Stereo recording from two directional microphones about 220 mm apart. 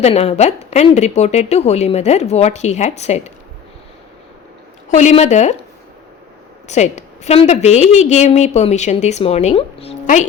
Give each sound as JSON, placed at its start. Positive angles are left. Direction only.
{"t": 0.0, "sound": "a woman's voice", "side_deg": 30}
{"t": 4.9, "sound": "a woman's voice", "side_deg": 30}
{"t": 6.7, "sound": "a woman's voice", "side_deg": 30}